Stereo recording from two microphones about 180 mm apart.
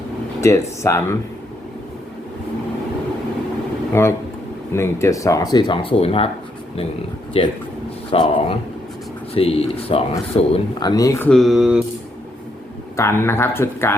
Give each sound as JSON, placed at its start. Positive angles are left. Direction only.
{"t": 0.4, "sound": "speech", "side_deg": 15}
{"t": 4.0, "sound": "speech", "side_deg": 15}
{"t": 7.3, "sound": "speech", "side_deg": 35}
{"t": 11.3, "sound": "mantra", "side_deg": 0}
{"t": 13.0, "sound": "speech", "side_deg": 15}